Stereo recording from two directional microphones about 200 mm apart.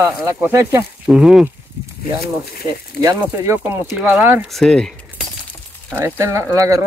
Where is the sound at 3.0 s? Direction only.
15° right (ahead or behind).